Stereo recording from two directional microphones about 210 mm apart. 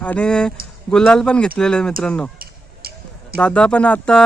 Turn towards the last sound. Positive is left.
turn(degrees=5)  # may be behind; listen again after turning